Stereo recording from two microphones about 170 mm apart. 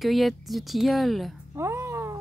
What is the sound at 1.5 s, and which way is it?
Cat, 15° right (ahead or behind).